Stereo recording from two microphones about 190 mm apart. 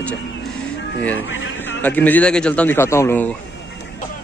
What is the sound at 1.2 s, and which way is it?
Speech, 85° left.